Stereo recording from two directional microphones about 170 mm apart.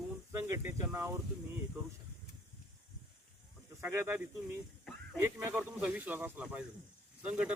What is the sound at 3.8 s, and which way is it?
Speech, 15° right (ahead or behind).